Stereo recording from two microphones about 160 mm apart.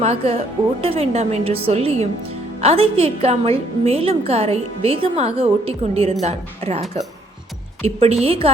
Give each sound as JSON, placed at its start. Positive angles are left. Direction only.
{"t": 0.0, "sound": "a woman's voice", "side_deg": -40}